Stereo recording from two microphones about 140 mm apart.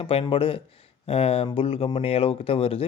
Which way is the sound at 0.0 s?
40° left (ahead or behind).